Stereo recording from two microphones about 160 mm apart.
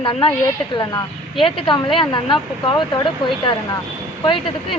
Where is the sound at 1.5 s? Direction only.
30° left (ahead or behind).